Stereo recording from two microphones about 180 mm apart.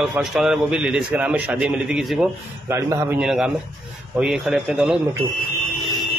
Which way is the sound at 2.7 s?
15° right (ahead or behind).